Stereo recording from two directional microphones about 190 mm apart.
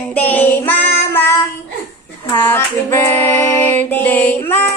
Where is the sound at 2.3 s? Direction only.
15° left (ahead or behind).